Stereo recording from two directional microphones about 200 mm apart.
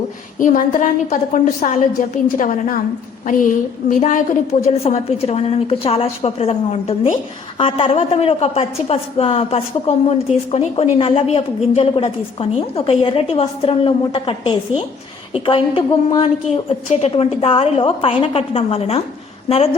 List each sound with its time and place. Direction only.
0.3 s a woman's voice: 40° left (ahead or behind)